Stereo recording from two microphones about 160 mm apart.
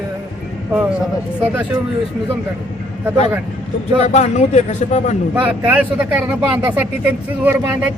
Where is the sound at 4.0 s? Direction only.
45° left (ahead or behind).